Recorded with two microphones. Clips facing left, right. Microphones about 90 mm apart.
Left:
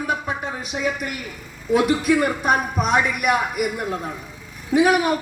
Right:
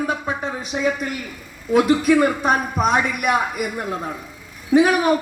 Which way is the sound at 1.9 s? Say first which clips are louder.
Right 3 dB; 35° right (ahead or behind).